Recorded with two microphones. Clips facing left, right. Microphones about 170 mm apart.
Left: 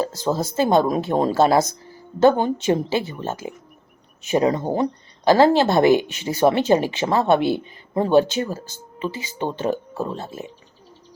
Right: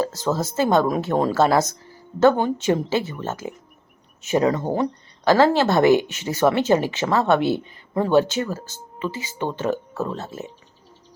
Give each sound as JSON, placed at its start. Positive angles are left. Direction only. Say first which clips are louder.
{"t": 0.0, "sound": "speech", "louder": "even", "side_deg": 15}